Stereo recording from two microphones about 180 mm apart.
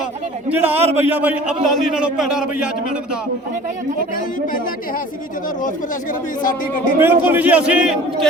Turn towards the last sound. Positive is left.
turn(degrees=-5)  # may be behind; listen again after turning